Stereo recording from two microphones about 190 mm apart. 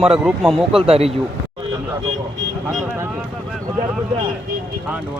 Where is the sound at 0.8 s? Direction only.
30° right (ahead or behind).